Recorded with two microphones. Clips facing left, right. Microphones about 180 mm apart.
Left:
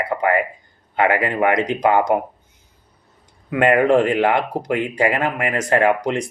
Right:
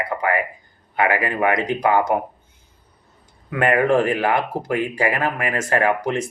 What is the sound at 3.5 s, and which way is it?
Speech, 20° left (ahead or behind).